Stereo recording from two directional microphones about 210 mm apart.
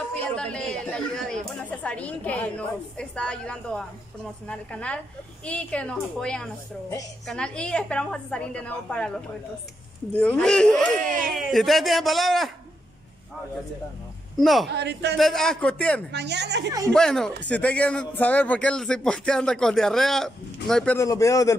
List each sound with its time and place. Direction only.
0.4 s a man's voice: 5° left (ahead or behind)
11.0 s speech: 40° right (ahead or behind)
11.3 s a man's voice: centre (ahead or behind)
14.3 s speech: centre (ahead or behind)
14.7 s a woman's voice: 55° right (ahead or behind)
15.1 s a man's voice: centre (ahead or behind)
16.1 s a woman's voice: 55° right (ahead or behind)
16.6 s speech: 15° right (ahead or behind)
16.9 s a man's voice: 5° left (ahead or behind)